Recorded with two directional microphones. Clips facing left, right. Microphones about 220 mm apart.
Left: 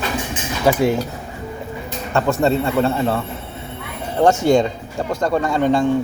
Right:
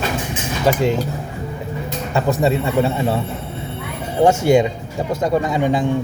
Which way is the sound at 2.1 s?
15° right (ahead or behind).